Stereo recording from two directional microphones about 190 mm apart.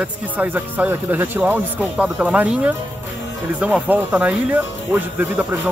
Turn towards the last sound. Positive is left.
turn(degrees=-10)  # may be behind; listen again after turning